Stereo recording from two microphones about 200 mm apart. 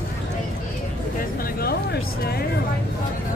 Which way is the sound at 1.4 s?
50° left (ahead or behind).